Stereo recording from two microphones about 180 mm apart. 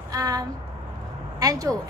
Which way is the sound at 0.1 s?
20° right (ahead or behind).